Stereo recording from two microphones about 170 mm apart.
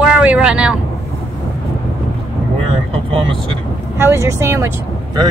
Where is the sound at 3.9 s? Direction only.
15° right (ahead or behind).